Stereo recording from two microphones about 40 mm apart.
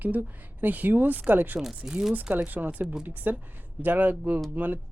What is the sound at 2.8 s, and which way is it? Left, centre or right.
Speech, right.